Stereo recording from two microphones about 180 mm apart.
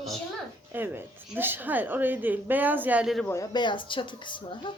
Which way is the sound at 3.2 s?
15° left (ahead or behind).